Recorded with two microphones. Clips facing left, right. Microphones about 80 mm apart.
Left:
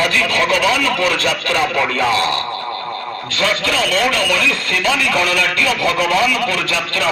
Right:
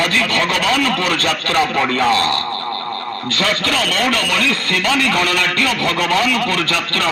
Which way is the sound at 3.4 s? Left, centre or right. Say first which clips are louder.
Left 1 dB; right.